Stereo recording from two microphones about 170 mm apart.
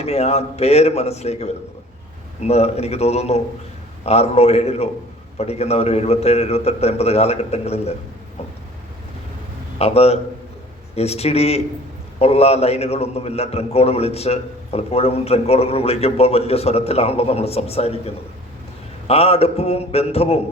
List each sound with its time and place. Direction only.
0.0 s a man's voice: 40° left (ahead or behind)
9.7 s a man's voice: 35° left (ahead or behind)